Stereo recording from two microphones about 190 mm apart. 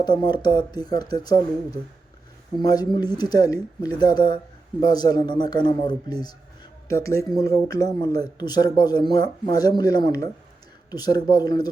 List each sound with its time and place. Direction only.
0.2 s speech: 20° left (ahead or behind)